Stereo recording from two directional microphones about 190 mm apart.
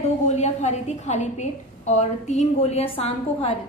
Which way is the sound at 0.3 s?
35° left (ahead or behind).